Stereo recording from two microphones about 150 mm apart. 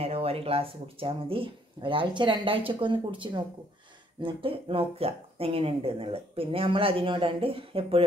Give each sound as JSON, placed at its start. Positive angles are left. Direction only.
{"t": 0.0, "sound": "speech", "side_deg": -40}